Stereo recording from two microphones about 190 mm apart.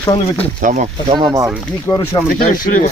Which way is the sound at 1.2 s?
25° right (ahead or behind).